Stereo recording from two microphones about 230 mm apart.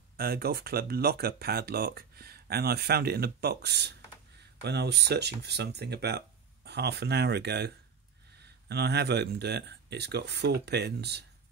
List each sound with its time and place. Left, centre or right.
0.2 s speech: right